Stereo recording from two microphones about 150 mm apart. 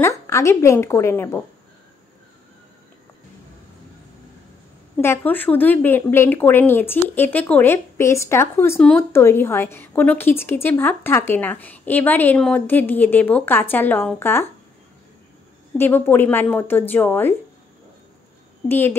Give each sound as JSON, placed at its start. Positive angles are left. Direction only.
{"t": 0.0, "sound": "a woman's voice", "side_deg": 20}
{"t": 5.0, "sound": "a woman's voice", "side_deg": 15}
{"t": 15.8, "sound": "a woman's voice", "side_deg": 15}
{"t": 18.7, "sound": "a woman's voice", "side_deg": 15}